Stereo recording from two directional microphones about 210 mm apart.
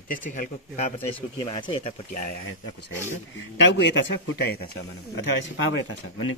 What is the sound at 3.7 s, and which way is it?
Speech, 55° left (ahead or behind).